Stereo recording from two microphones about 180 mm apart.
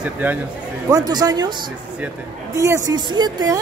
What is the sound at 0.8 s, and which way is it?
Speech, 20° right (ahead or behind).